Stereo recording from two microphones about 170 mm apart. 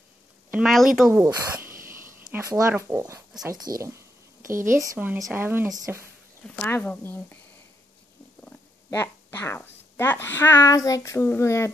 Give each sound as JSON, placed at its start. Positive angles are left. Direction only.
{"t": 0.5, "sound": "a woman's voice", "side_deg": -5}
{"t": 1.1, "sound": "speech", "side_deg": -15}
{"t": 1.9, "sound": "a sound", "side_deg": -15}
{"t": 2.8, "sound": "speech", "side_deg": -15}
{"t": 4.5, "sound": "speech", "side_deg": -50}
{"t": 4.9, "sound": "speech", "side_deg": -10}
{"t": 6.4, "sound": "speech", "side_deg": 5}
{"t": 8.5, "sound": "speech", "side_deg": 10}